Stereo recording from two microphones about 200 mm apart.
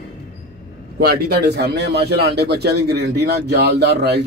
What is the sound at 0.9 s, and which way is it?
A man's voice, 50° right (ahead or behind).